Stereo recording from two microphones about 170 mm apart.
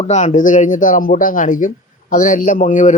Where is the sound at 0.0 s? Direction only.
40° left (ahead or behind).